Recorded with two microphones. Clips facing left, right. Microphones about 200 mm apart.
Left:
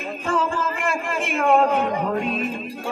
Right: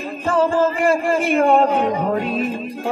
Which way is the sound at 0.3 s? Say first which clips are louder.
Right 7 dB; 35° right (ahead or behind).